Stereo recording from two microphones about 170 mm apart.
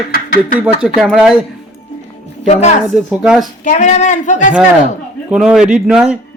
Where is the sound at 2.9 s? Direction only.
Centre (ahead or behind).